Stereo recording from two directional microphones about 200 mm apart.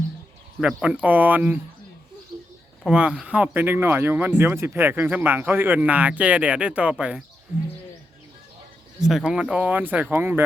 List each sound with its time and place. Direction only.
0.6 s speech: 5° right (ahead or behind)
2.8 s speech: 5° right (ahead or behind)
9.0 s speech: 5° right (ahead or behind)